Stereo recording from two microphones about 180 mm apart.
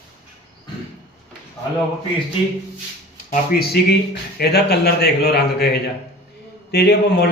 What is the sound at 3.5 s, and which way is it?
A man's voice, 60° left (ahead or behind).